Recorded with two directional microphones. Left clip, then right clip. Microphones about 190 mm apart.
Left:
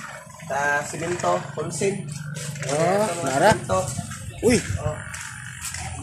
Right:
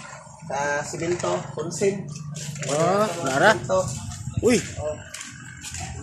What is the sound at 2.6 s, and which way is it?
Speech, 10° left (ahead or behind).